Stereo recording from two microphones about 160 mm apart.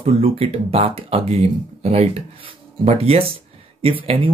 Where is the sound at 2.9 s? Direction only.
40° right (ahead or behind).